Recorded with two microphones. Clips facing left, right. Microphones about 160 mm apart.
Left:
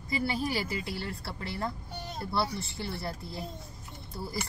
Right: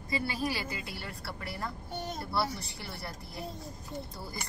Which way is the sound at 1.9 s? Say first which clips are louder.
Right 3 dB; 45° right (ahead or behind).